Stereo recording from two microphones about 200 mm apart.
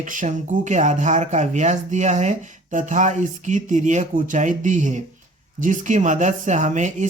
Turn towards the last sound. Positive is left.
turn(degrees=-40)  # may be behind; listen again after turning